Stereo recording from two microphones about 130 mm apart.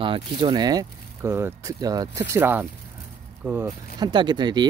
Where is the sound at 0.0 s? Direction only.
40° right (ahead or behind); by 2.6 s 20° right (ahead or behind).